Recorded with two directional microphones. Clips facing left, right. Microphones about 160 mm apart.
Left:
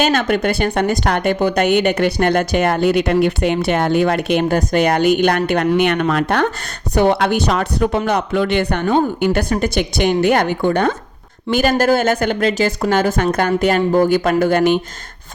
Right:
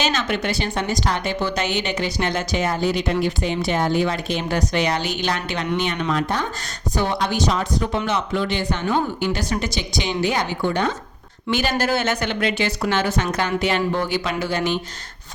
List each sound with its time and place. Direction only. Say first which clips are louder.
0.0 s a woman's voice: left 7 dB; 55° left (ahead or behind)